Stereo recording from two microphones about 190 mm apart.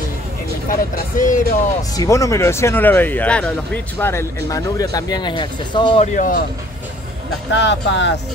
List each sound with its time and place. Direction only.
0.7 s speech: 45° left (ahead or behind)
1.8 s speech: 15° left (ahead or behind)
6.1 s speech: 45° left (ahead or behind)
7.5 s speech: 75° left (ahead or behind)